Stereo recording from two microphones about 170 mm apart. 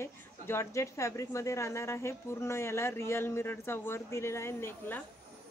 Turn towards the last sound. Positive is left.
turn(degrees=10)  # may be behind; listen again after turning